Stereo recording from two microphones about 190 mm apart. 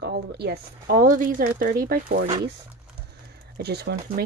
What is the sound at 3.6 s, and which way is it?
Speech, 60° right (ahead or behind).